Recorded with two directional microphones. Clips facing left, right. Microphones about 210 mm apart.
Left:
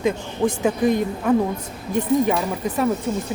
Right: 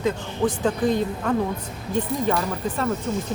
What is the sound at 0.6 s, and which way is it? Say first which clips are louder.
A woman's voice: left 3 dB; 10° left (ahead or behind).